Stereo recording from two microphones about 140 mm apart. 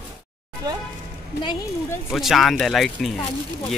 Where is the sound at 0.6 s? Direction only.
25° right (ahead or behind).